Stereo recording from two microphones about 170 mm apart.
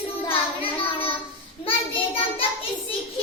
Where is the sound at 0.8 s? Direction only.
35° left (ahead or behind).